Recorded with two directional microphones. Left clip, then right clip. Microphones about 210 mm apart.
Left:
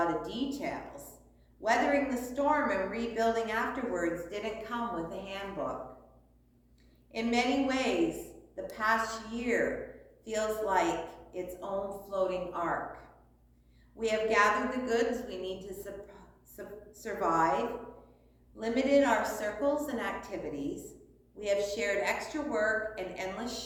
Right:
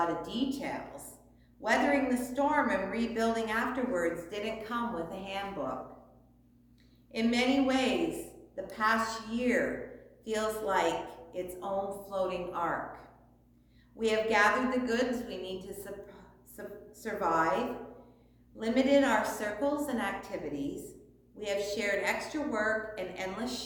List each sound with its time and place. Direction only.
0.0 s a woman's voice: 15° right (ahead or behind)
7.1 s a woman's voice: 15° right (ahead or behind)
14.0 s a woman's voice: 15° right (ahead or behind)